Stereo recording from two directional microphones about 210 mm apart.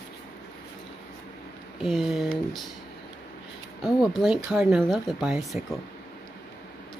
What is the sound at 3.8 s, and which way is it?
Speech, centre (ahead or behind).